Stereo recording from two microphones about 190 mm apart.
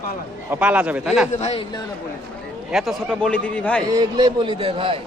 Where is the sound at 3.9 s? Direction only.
20° right (ahead or behind).